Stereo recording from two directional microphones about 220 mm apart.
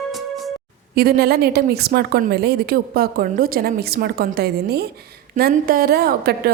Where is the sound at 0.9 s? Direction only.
45° right (ahead or behind).